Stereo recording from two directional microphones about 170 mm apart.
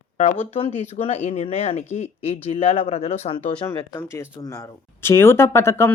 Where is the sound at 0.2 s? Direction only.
40° left (ahead or behind).